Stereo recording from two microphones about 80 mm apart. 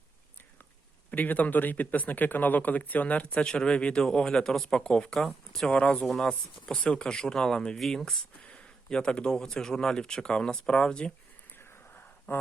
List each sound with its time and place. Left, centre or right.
1.1 s speech: left
12.3 s speech: left